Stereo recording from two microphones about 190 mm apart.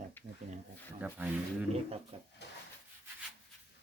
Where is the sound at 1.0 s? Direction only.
10° right (ahead or behind).